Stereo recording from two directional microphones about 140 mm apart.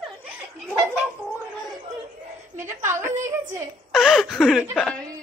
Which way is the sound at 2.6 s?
20° right (ahead or behind).